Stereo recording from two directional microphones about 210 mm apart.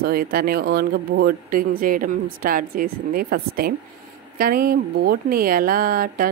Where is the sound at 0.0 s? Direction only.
45° right (ahead or behind).